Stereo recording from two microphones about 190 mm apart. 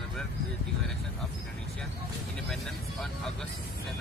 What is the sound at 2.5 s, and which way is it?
Speech, centre (ahead or behind).